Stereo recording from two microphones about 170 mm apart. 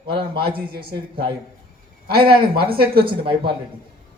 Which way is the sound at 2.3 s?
65° right (ahead or behind).